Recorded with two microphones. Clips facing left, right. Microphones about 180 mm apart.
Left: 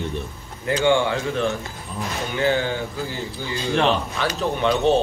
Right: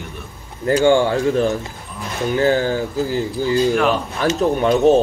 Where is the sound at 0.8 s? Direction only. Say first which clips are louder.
Right 4 dB; 40° right (ahead or behind).